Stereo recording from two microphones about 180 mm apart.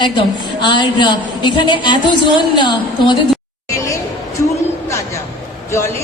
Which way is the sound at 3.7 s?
20° left (ahead or behind).